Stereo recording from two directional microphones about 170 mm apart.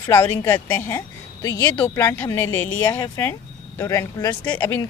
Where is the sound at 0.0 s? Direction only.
15° left (ahead or behind).